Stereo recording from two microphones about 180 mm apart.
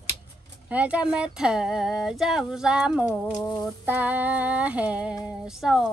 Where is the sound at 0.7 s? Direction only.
10° right (ahead or behind).